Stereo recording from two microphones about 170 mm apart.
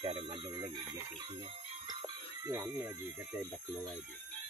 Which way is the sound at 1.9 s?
25° right (ahead or behind).